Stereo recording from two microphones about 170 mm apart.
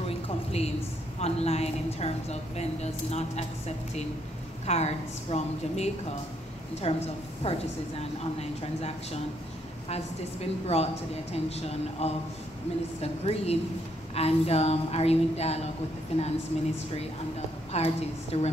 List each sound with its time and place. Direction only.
0.0 s a sound: 35° left (ahead or behind)
1.2 s a woman's voice: 40° left (ahead or behind)
17.7 s a woman's voice: 40° left (ahead or behind)